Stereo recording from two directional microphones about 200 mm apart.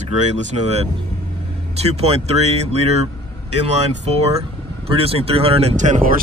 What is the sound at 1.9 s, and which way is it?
Speech, 30° right (ahead or behind).